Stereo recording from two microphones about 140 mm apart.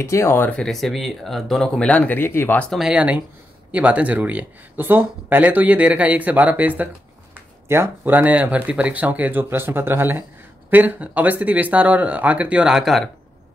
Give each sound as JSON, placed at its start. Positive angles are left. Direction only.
{"t": 0.0, "sound": "speech", "side_deg": 20}
{"t": 0.6, "sound": "speech", "side_deg": 0}
{"t": 2.7, "sound": "speech", "side_deg": -5}